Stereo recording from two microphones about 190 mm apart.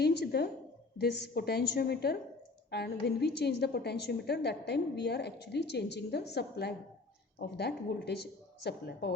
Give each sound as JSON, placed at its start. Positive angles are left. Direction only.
{"t": 0.0, "sound": "a woman's voice", "side_deg": 60}